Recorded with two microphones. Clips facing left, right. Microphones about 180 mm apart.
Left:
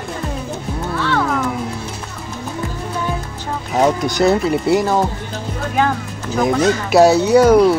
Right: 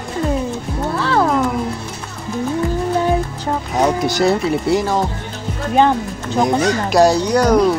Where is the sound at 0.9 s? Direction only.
30° right (ahead or behind).